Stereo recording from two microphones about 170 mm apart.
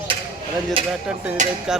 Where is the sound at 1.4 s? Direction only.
45° right (ahead or behind).